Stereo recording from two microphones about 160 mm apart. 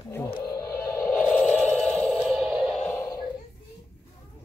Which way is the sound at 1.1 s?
10° left (ahead or behind).